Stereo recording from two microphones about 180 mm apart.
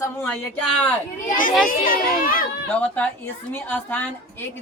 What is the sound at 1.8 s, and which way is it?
Speech, 50° left (ahead or behind).